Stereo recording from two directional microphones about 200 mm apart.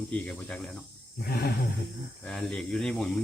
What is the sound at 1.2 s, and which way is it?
Roaring cats, 50° left (ahead or behind).